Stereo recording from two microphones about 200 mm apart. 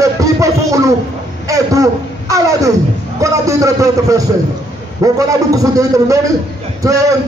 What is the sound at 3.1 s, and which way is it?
Speech, 15° right (ahead or behind).